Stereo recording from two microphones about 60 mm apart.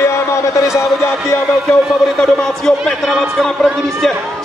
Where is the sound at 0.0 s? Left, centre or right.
Left.